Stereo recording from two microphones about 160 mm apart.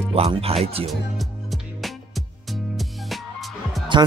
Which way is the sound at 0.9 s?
Centre (ahead or behind).